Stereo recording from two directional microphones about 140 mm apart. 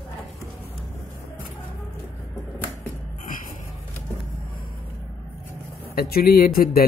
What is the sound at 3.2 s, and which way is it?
Music, 75° left (ahead or behind).